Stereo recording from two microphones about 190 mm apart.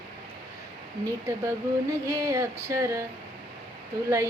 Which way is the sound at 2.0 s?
15° right (ahead or behind).